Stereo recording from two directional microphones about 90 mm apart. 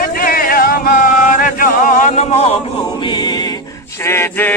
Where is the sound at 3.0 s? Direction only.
50° left (ahead or behind).